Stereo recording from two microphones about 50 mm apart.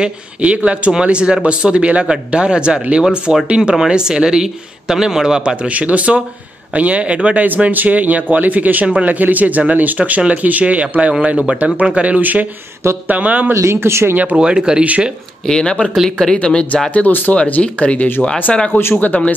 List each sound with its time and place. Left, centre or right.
0.0 s speech: right
7.4 s speech: right
13.6 s speech: right
14.3 s speech: centre
15.4 s speech: centre
16.3 s speech: left
18.7 s speech: left
18.9 s speech: left